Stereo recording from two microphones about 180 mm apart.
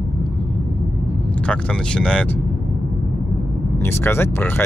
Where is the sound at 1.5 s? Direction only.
5° left (ahead or behind).